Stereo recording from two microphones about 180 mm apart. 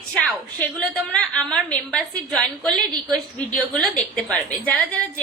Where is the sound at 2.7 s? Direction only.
25° right (ahead or behind).